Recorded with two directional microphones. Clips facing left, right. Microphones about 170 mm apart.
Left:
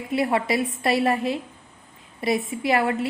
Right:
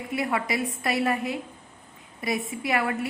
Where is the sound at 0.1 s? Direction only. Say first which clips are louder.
Left 5 dB; 30° left (ahead or behind).